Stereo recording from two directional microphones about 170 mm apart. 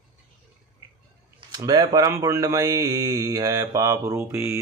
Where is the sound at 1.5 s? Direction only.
25° right (ahead or behind).